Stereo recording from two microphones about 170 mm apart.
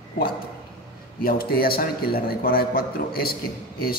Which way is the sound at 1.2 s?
60° left (ahead or behind).